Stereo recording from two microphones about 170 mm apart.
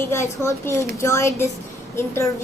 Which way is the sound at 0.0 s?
15° left (ahead or behind).